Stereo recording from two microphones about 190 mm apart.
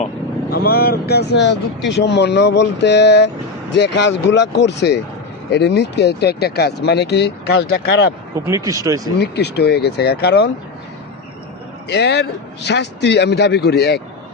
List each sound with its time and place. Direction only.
0.5 s speech: 55° left (ahead or behind)
8.4 s speech: 15° right (ahead or behind)
9.1 s speech: 60° left (ahead or behind)
11.9 s speech: 60° left (ahead or behind)